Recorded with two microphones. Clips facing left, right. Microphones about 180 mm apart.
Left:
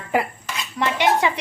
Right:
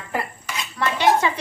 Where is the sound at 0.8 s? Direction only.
15° left (ahead or behind).